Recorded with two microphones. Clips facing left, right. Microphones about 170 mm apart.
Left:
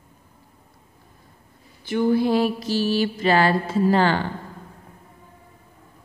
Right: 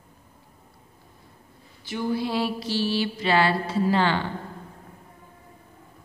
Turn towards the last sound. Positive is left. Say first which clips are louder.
# left 3 dB
turn(degrees=45)  # may be behind; listen again after turning